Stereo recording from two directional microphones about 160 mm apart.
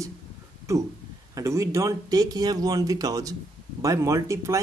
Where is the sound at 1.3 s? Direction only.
20° right (ahead or behind).